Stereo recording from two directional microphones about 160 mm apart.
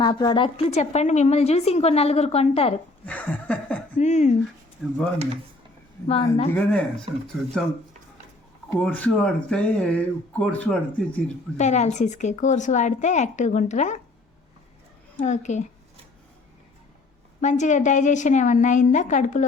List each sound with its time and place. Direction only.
0.0 s a woman's voice: 30° left (ahead or behind)
3.1 s speech: 10° left (ahead or behind)
3.9 s a woman's voice: 45° left (ahead or behind)
4.8 s speech: centre (ahead or behind)
6.1 s a woman's voice: 40° left (ahead or behind)
6.5 s speech: 10° left (ahead or behind)
8.8 s speech: 5° left (ahead or behind)
11.5 s a woman's voice: 45° left (ahead or behind)
15.2 s a woman's voice: 45° left (ahead or behind)
17.4 s a woman's voice: 50° left (ahead or behind)